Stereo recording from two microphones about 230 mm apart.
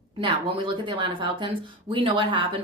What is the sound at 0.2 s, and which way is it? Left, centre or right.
A woman's voice, right.